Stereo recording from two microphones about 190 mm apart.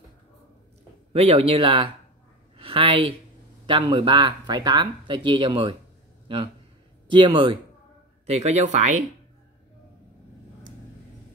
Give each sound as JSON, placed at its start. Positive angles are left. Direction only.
{"t": 1.1, "sound": "a woman's voice", "side_deg": -30}
{"t": 8.3, "sound": "speech", "side_deg": -35}